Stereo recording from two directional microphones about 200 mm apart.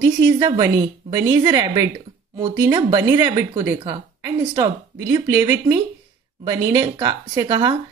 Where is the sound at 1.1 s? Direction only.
20° right (ahead or behind).